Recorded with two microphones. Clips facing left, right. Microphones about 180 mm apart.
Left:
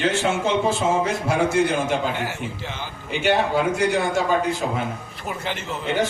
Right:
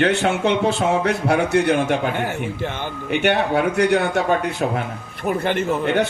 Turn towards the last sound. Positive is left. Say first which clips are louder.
# right 6 dB
turn(degrees=-55)  # may be behind; listen again after turning